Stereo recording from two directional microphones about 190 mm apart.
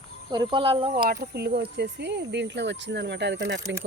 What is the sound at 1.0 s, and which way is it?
Speech, 55° right (ahead or behind).